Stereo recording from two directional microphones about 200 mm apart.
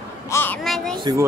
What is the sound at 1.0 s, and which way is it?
Speech, 15° right (ahead or behind).